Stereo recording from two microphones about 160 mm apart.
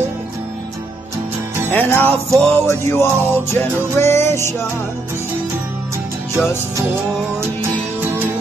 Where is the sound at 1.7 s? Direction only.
15° left (ahead or behind).